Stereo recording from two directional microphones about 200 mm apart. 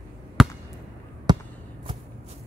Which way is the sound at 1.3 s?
20° right (ahead or behind).